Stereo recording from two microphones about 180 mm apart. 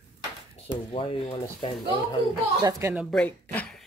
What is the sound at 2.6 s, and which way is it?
Speech, 15° right (ahead or behind).